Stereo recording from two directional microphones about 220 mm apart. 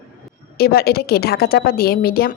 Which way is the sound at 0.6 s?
45° left (ahead or behind).